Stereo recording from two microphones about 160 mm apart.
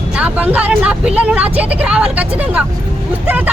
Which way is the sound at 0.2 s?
10° right (ahead or behind).